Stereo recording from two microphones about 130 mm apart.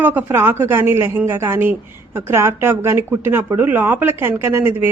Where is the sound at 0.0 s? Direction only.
15° right (ahead or behind).